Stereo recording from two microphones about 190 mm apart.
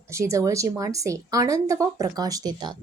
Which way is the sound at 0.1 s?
15° right (ahead or behind).